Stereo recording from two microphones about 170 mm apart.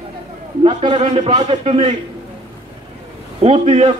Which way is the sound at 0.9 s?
40° right (ahead or behind).